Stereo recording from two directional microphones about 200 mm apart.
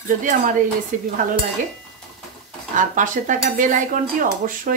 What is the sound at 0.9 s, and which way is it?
Speech, 40° right (ahead or behind).